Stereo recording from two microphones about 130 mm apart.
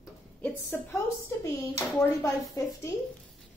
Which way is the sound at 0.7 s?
15° left (ahead or behind).